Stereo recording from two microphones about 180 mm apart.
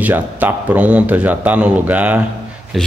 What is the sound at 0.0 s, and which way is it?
A man's voice, 10° right (ahead or behind).